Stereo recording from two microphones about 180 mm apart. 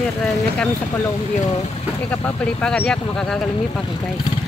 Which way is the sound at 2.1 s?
5° left (ahead or behind).